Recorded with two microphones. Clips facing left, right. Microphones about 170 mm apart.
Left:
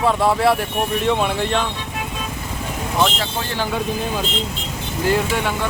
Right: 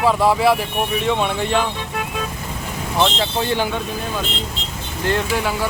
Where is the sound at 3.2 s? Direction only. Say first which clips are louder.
Right 4 dB; 20° right (ahead or behind).